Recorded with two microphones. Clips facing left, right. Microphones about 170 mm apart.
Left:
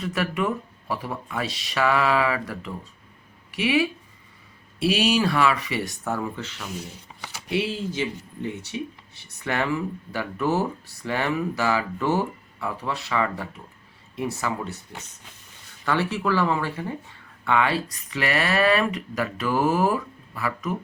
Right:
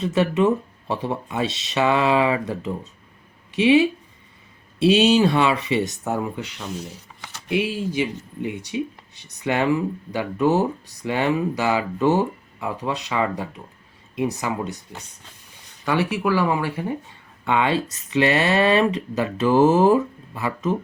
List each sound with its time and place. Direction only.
0.0 s speech: 25° right (ahead or behind)
7.1 s a sound: 10° left (ahead or behind)
7.5 s speech: 15° right (ahead or behind)